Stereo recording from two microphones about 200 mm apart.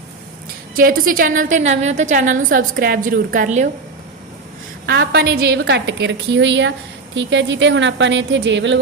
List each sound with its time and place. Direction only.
0.8 s a woman's voice: 45° right (ahead or behind)
4.9 s a woman's voice: 55° right (ahead or behind)